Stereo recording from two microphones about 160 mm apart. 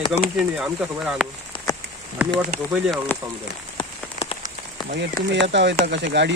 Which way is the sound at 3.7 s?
35° left (ahead or behind).